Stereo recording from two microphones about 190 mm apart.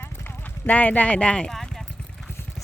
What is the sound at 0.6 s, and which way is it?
Speech, 10° left (ahead or behind).